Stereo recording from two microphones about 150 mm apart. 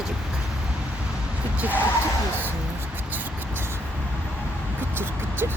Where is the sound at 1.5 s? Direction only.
10° right (ahead or behind).